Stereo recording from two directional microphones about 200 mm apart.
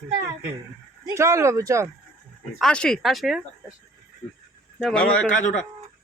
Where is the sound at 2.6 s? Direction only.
5° left (ahead or behind).